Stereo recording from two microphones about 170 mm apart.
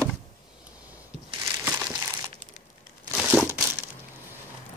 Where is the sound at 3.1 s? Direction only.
5° right (ahead or behind).